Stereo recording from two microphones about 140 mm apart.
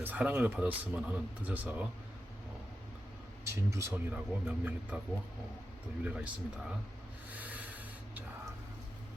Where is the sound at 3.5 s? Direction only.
20° right (ahead or behind).